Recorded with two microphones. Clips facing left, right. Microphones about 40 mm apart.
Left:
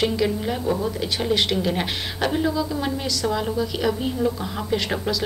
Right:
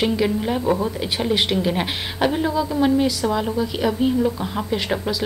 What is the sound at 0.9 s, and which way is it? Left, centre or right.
A woman's voice, centre.